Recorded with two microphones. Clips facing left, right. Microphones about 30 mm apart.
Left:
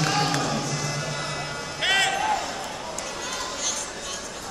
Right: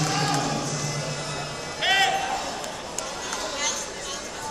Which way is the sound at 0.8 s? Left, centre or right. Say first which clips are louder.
Left 1 dB; centre.